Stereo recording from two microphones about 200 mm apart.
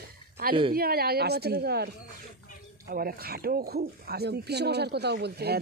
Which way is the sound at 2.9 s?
50° right (ahead or behind).